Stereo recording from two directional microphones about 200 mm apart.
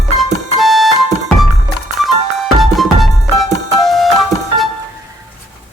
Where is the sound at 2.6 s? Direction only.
Centre (ahead or behind).